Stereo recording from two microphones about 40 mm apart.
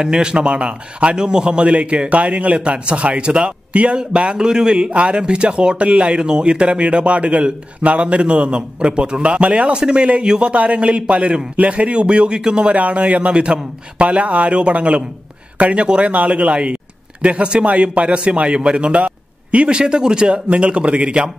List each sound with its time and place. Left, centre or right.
0.0 s speech: right
12.7 s a man's voice: right